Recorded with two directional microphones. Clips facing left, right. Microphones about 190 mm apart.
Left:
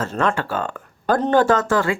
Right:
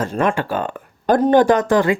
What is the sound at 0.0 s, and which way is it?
Speech, 15° right (ahead or behind).